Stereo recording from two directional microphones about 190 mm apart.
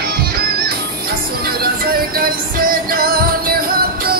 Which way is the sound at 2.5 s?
50° right (ahead or behind).